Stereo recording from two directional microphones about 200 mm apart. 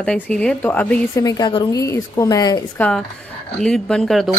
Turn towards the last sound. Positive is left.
turn(degrees=0)  # may be behind; listen again after turning